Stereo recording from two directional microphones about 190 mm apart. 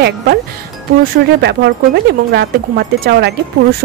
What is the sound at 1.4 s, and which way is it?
Speech, 60° right (ahead or behind).